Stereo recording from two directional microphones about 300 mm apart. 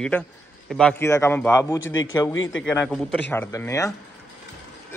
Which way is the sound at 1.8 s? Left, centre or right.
Left.